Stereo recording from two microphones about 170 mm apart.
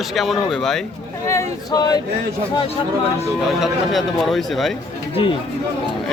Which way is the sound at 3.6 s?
Centre (ahead or behind).